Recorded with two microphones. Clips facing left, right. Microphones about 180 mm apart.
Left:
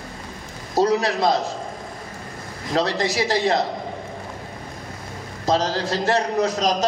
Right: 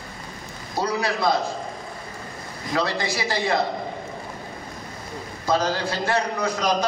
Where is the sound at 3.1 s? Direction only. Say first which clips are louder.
Left 4 dB; 90° left.